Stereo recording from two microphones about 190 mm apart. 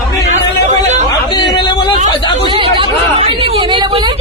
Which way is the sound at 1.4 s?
65° left (ahead or behind).